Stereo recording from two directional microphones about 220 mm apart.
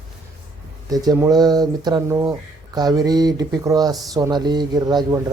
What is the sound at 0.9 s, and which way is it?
A man's voice, 15° right (ahead or behind).